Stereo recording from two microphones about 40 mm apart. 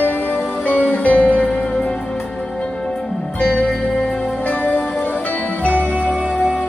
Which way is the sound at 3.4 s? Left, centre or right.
Left.